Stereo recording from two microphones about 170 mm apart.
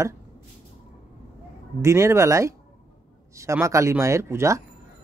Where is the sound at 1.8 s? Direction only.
15° right (ahead or behind).